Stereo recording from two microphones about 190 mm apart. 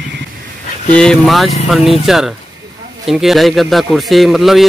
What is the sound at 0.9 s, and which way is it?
Speech, 5° left (ahead or behind).